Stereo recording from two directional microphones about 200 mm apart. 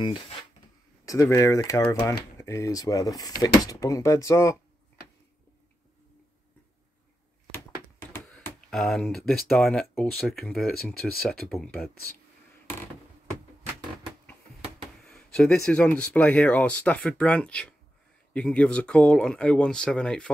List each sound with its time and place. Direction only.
0.0 s speech: 25° left (ahead or behind)
8.3 s speech: 5° left (ahead or behind)
15.0 s speech: 5° left (ahead or behind)